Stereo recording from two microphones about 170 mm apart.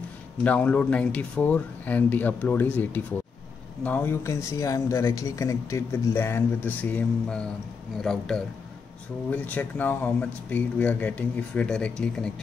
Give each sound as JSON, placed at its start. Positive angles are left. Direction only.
{"t": 0.4, "sound": "a man's voice", "side_deg": 10}